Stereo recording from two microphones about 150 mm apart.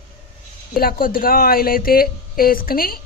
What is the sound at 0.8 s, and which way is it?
Speech, 80° left.